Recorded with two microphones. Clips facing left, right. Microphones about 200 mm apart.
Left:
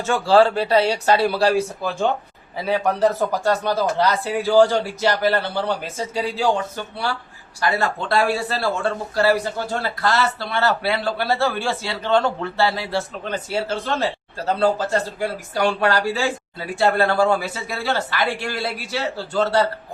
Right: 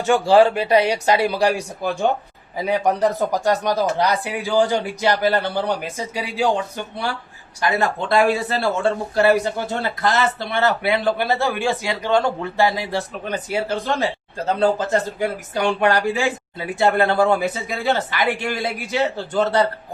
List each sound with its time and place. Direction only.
0.0 s speech: 15° right (ahead or behind)